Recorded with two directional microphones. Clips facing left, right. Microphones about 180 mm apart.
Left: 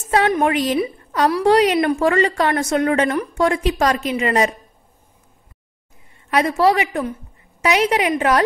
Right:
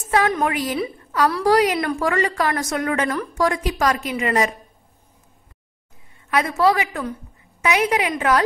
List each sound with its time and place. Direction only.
0.3 s a woman's voice: 25° left (ahead or behind)
6.3 s a woman's voice: 30° left (ahead or behind)